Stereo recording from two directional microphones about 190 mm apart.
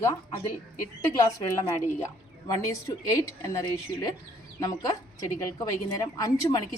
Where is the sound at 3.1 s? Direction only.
15° left (ahead or behind).